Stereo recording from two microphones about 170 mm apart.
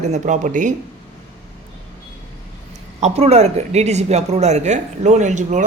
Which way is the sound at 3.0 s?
40° right (ahead or behind).